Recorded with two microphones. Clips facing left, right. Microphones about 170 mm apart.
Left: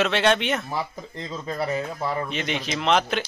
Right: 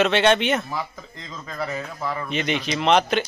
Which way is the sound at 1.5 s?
25° left (ahead or behind).